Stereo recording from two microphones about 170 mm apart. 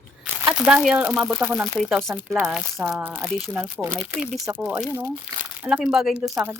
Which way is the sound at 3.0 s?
10° right (ahead or behind).